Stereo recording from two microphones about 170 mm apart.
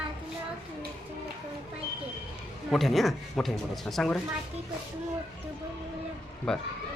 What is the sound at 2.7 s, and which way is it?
Speech, centre (ahead or behind).